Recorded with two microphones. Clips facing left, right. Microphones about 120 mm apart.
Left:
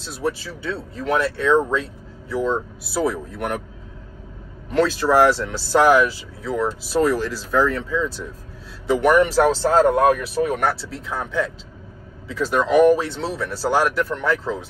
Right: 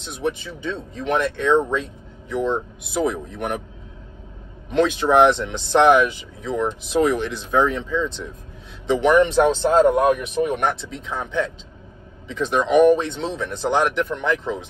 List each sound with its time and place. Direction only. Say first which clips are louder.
0.0 s speech: even; 20° right (ahead or behind)
4.7 s speech: right 1 dB; 20° right (ahead or behind)